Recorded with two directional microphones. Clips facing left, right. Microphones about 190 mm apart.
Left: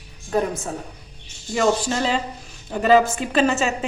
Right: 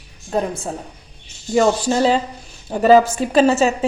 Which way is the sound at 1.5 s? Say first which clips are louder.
Right 4 dB; 40° right (ahead or behind).